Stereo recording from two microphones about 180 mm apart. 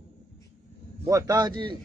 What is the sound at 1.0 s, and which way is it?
Speech, 20° right (ahead or behind).